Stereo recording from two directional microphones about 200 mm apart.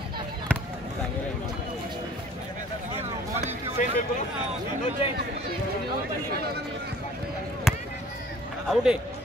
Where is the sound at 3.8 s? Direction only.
40° left (ahead or behind).